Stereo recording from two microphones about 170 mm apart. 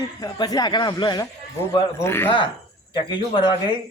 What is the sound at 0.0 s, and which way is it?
Speech, 25° left (ahead or behind).